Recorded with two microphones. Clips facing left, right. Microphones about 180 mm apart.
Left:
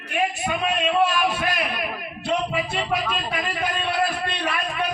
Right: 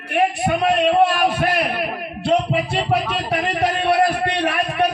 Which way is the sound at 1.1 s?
60° right (ahead or behind).